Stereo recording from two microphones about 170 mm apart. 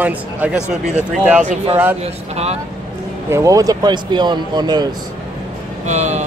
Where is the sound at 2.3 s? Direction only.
40° right (ahead or behind).